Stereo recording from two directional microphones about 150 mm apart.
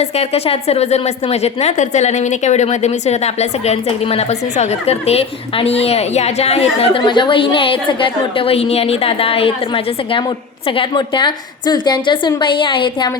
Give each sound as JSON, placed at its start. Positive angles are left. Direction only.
{"t": 0.0, "sound": "a woman's voice", "side_deg": 45}